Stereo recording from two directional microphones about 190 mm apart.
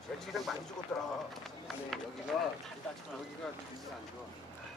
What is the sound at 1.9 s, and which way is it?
Speech, centre (ahead or behind).